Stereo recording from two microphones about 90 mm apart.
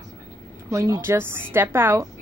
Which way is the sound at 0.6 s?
35° right (ahead or behind).